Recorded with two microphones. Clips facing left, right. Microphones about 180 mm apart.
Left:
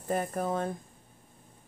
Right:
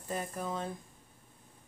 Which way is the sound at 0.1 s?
55° left (ahead or behind).